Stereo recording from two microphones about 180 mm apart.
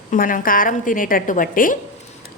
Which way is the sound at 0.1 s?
50° left (ahead or behind).